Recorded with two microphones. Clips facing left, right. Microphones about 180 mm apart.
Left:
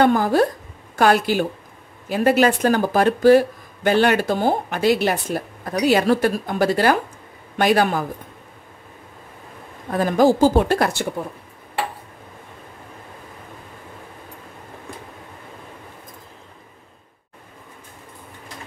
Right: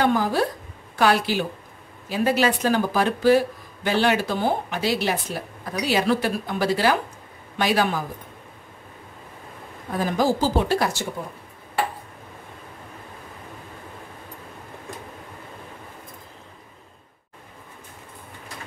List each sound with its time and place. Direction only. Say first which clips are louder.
0.0 s speech: left 5 dB; 50° left (ahead or behind)
9.9 s speech: left 6 dB; 50° left (ahead or behind)